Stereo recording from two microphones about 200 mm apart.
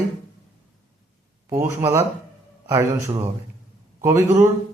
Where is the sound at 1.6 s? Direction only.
10° right (ahead or behind).